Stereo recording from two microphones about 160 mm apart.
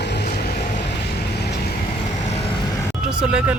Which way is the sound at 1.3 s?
90° left.